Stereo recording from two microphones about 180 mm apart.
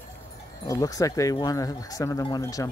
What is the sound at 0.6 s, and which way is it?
Speech, 20° left (ahead or behind).